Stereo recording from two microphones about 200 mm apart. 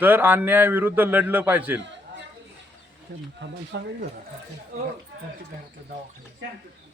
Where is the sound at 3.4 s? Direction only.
60° right (ahead or behind).